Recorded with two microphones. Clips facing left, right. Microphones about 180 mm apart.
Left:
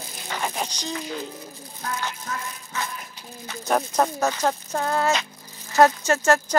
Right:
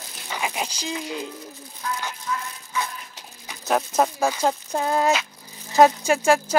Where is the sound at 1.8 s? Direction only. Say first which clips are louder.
Right 1 dB; 45° left (ahead or behind).